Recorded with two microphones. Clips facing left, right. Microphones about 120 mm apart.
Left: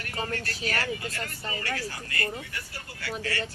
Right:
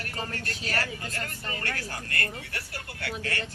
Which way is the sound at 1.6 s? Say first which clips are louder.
Left 1 dB; 55° right (ahead or behind).